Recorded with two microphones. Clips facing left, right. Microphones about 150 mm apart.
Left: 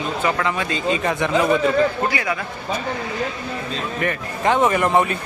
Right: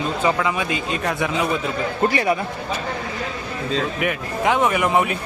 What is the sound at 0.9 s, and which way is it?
Speech, centre (ahead or behind).